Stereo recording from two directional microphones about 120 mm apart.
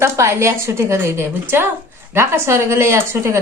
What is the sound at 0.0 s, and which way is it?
A woman's voice, 25° right (ahead or behind).